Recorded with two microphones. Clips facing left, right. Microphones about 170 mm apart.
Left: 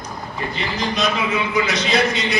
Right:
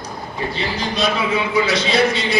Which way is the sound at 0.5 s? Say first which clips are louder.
Left 1 dB; 30° right (ahead or behind).